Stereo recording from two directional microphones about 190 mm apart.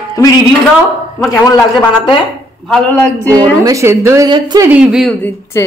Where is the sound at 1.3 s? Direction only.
15° left (ahead or behind).